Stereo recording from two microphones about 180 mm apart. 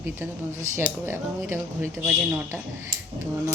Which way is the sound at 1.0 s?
10° right (ahead or behind).